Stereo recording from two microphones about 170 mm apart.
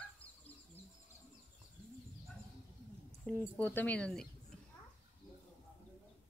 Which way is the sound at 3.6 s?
10° left (ahead or behind).